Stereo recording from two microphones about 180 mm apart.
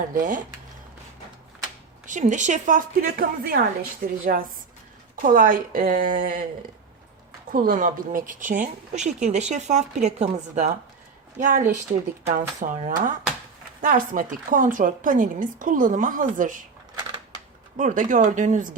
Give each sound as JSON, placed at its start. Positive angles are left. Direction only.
{"t": 0.1, "sound": "a woman's voice", "side_deg": -45}
{"t": 2.0, "sound": "a woman's voice", "side_deg": -45}
{"t": 7.5, "sound": "a woman's voice", "side_deg": -50}
{"t": 17.7, "sound": "a woman's voice", "side_deg": -45}